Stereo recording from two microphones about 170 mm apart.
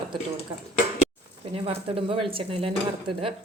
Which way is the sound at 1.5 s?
35° right (ahead or behind).